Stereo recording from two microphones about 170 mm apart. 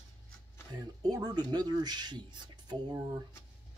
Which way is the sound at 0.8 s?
20° right (ahead or behind).